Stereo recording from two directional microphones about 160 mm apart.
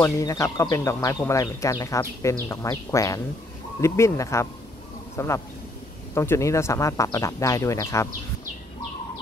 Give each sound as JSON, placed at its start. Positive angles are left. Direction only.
{"t": 0.0, "sound": "speech", "side_deg": 20}